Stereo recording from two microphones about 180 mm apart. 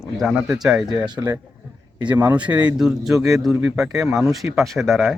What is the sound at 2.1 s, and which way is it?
Speech, 10° right (ahead or behind).